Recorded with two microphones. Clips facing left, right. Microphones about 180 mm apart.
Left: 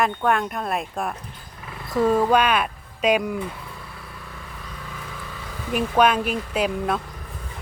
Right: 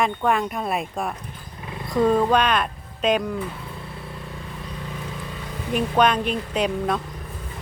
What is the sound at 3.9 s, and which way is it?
Vehicle, 25° right (ahead or behind).